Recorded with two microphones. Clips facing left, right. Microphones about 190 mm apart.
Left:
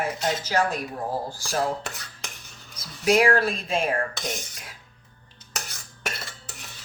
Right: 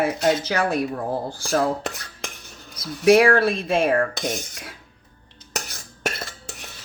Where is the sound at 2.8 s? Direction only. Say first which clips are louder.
Right 5 dB; 60° right (ahead or behind).